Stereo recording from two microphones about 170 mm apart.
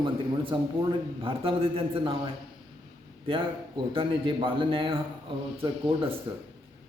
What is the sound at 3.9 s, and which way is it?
A man's voice, 30° right (ahead or behind).